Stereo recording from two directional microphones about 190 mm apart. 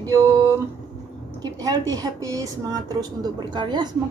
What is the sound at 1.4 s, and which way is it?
A woman's voice, 20° right (ahead or behind).